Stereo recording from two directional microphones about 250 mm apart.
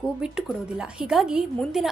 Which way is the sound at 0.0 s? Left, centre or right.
Centre.